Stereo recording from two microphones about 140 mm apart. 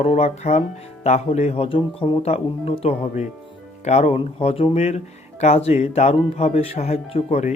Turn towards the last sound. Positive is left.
turn(degrees=50)  # may be behind; listen again after turning